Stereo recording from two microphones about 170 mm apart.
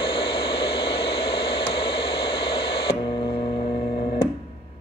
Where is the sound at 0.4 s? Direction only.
75° left (ahead or behind).